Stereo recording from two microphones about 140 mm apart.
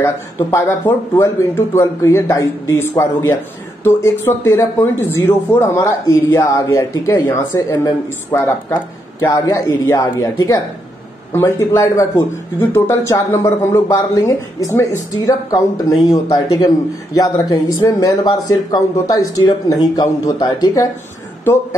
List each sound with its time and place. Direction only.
0.0 s a man's voice: 20° left (ahead or behind)